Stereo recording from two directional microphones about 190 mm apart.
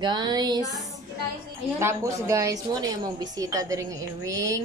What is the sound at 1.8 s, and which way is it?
A woman's voice, 15° right (ahead or behind).